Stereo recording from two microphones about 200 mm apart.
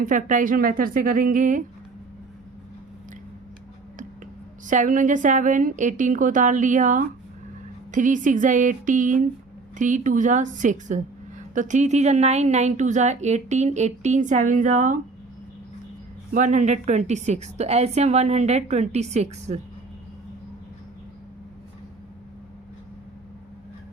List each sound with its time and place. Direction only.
0.0 s a woman's voice: 40° right (ahead or behind)
4.6 s a woman's voice: 40° right (ahead or behind)
16.3 s a woman's voice: 40° right (ahead or behind)